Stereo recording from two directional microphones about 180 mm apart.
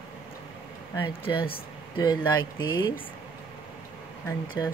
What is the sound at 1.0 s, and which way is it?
Speech, 30° left (ahead or behind).